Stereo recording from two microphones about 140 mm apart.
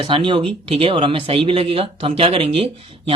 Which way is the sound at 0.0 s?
35° right (ahead or behind).